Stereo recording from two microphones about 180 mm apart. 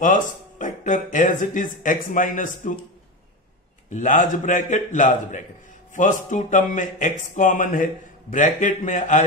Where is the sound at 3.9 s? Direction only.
45° left (ahead or behind).